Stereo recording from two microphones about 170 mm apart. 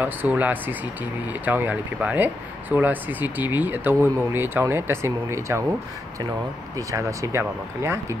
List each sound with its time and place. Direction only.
0.0 s speech: 10° right (ahead or behind)
6.9 s speech: 20° right (ahead or behind)